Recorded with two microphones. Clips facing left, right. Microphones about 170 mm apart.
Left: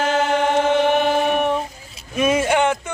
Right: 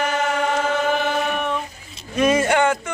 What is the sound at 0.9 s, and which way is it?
Chant, 20° left (ahead or behind).